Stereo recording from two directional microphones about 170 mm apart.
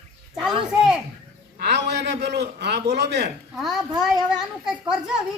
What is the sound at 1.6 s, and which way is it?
A man's voice, 80° right.